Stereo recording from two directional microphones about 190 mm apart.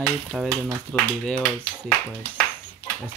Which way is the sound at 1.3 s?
15° left (ahead or behind).